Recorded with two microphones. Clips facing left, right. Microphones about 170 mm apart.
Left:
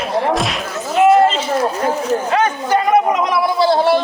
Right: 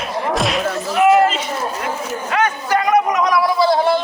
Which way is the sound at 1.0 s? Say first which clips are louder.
Left 2 dB; 30° left (ahead or behind).